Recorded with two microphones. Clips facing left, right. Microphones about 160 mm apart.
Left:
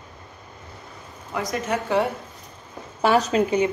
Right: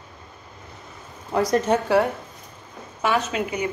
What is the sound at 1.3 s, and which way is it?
Speech, 35° right (ahead or behind).